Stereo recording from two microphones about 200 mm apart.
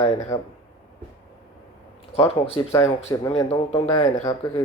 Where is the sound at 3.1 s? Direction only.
15° left (ahead or behind).